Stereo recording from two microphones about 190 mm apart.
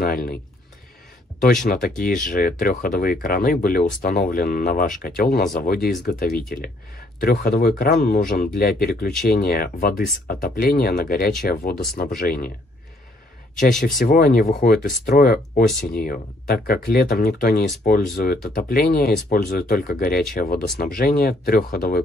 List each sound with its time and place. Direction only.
0.0 s speech: 50° left (ahead or behind)
1.4 s speech: 50° left (ahead or behind)
13.6 s speech: 45° left (ahead or behind)